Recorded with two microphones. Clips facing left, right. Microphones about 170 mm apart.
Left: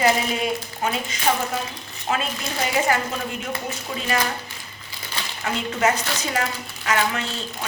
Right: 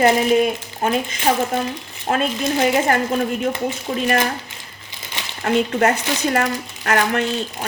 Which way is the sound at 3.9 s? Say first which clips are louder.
Right 7 dB; 45° right (ahead or behind).